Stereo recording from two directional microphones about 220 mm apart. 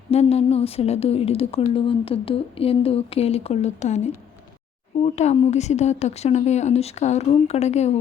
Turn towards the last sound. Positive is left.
turn(degrees=30)  # may be behind; listen again after turning